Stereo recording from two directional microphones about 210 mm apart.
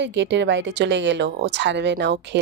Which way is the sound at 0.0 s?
60° right (ahead or behind).